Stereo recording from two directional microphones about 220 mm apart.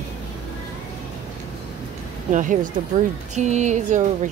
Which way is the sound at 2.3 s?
35° right (ahead or behind).